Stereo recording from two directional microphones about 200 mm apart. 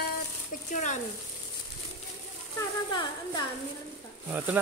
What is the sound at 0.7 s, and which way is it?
Speech, 40° left (ahead or behind).